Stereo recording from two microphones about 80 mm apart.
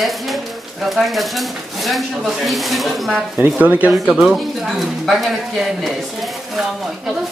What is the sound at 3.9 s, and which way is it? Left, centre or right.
Speech, centre.